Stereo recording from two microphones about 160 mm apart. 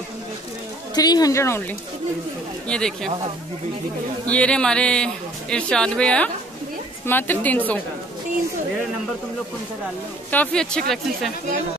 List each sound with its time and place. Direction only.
0.9 s a woman's voice: 25° left (ahead or behind)
2.7 s a man's voice: 5° left (ahead or behind)
4.3 s a man's voice: 5° left (ahead or behind)
10.3 s a man's voice: 5° left (ahead or behind)